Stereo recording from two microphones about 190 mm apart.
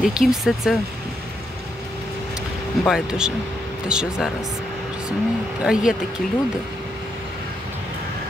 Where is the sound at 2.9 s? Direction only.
5° right (ahead or behind).